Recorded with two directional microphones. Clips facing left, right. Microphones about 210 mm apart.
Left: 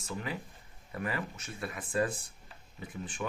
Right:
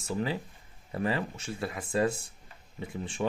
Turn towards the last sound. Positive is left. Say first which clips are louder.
# right 5 dB
turn(degrees=-25)  # may be behind; listen again after turning